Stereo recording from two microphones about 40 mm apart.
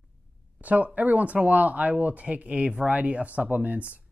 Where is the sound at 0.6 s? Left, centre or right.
Right.